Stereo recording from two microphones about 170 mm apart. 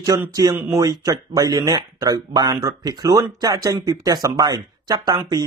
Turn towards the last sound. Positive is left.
turn(degrees=-25)  # may be behind; listen again after turning